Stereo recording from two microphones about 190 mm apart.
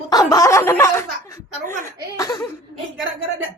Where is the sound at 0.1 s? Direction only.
20° left (ahead or behind).